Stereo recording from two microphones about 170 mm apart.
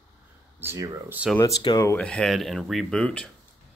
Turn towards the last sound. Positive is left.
turn(degrees=5)  # may be behind; listen again after turning